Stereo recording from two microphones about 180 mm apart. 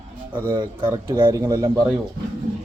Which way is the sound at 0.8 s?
20° right (ahead or behind).